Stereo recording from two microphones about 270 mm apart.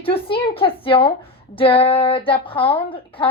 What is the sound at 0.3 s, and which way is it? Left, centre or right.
A woman's voice, centre.